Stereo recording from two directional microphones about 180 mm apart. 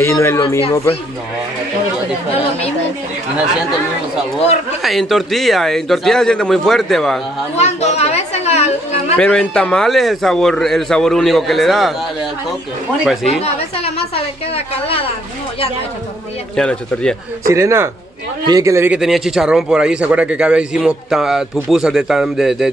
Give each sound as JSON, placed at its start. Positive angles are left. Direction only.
{"t": 0.0, "sound": "a man's voice", "side_deg": 15}
{"t": 4.8, "sound": "a man's voice", "side_deg": 0}
{"t": 7.5, "sound": "a sound", "side_deg": 35}
{"t": 9.2, "sound": "a man's voice", "side_deg": 5}
{"t": 13.3, "sound": "a woman's voice", "side_deg": 35}
{"t": 16.5, "sound": "a man's voice", "side_deg": 5}
{"t": 17.5, "sound": "a man's voice", "side_deg": -15}
{"t": 18.9, "sound": "a man's voice", "side_deg": 0}